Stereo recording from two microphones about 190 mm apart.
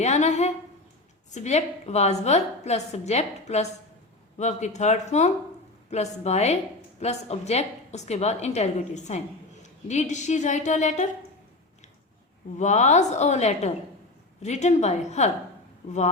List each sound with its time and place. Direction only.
0.0 s a woman's voice: 35° left (ahead or behind)
12.5 s a woman's voice: 40° left (ahead or behind)